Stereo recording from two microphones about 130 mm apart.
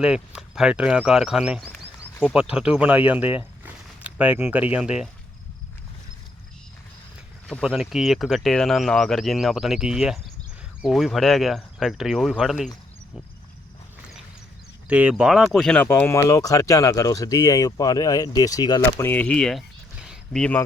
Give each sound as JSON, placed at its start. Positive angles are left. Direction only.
{"t": 0.0, "sound": "speech", "side_deg": -5}
{"t": 1.6, "sound": "a sound", "side_deg": 15}
{"t": 2.2, "sound": "speech", "side_deg": -5}
{"t": 7.6, "sound": "speech", "side_deg": -5}
{"t": 14.8, "sound": "speech", "side_deg": -10}
{"t": 15.9, "sound": "speech", "side_deg": 20}
{"t": 18.8, "sound": "speech", "side_deg": 15}
{"t": 20.4, "sound": "speech", "side_deg": 15}